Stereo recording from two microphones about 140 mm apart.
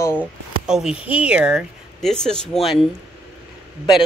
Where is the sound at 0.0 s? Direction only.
15° left (ahead or behind).